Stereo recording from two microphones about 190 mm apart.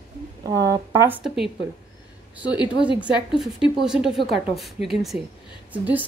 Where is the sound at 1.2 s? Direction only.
Centre (ahead or behind).